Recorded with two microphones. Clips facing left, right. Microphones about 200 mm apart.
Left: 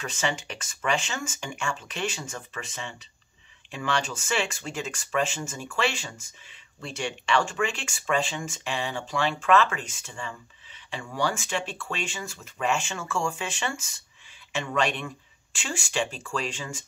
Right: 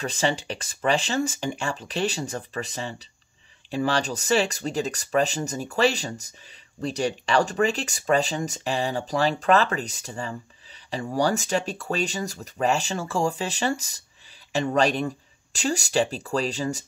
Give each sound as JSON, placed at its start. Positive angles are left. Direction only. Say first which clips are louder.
{"t": 0.0, "sound": "speech", "louder": "right 5 dB", "side_deg": -35}